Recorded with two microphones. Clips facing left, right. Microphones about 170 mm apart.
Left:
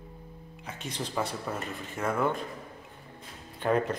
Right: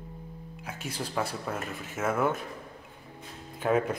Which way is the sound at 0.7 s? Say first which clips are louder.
Even; 5° right (ahead or behind).